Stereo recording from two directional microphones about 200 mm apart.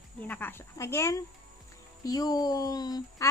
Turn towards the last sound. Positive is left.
turn(degrees=15)  # may be behind; listen again after turning